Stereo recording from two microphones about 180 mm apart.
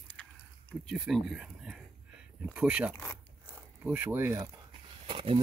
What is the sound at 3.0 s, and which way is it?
Zipper, 15° left (ahead or behind).